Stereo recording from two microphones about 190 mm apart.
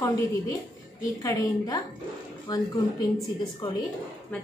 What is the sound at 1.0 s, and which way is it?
A woman's voice, 15° left (ahead or behind).